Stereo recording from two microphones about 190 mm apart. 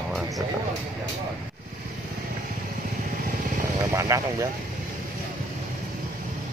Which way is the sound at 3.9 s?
15° right (ahead or behind).